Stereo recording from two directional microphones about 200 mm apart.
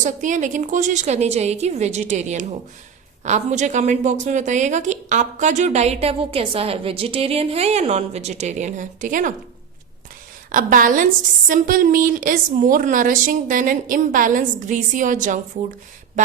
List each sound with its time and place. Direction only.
0.0 s a woman's voice: 40° right (ahead or behind)
10.5 s a woman's voice: 40° right (ahead or behind)